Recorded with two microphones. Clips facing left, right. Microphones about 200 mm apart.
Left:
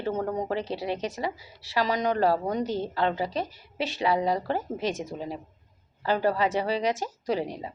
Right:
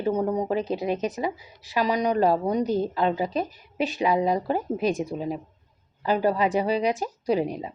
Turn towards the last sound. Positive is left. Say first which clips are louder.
# right 4 dB
turn(degrees=-15)  # may be behind; listen again after turning